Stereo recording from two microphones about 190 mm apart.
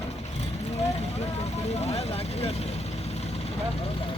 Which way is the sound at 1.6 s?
35° left (ahead or behind).